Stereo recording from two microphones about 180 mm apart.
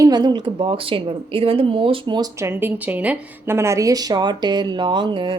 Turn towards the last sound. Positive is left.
turn(degrees=-25)  # may be behind; listen again after turning